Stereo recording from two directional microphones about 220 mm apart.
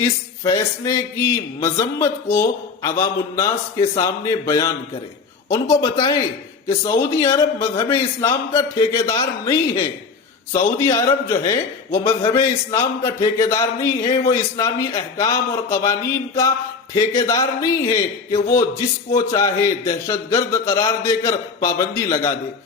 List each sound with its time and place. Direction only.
0.0 s a man's voice: 15° left (ahead or behind)
10.8 s a man's voice: 15° left (ahead or behind)